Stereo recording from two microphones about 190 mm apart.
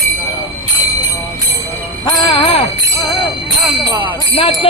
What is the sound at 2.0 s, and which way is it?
Jingle bell, 25° left (ahead or behind).